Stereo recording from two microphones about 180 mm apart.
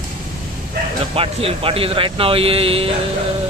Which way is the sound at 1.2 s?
30° right (ahead or behind).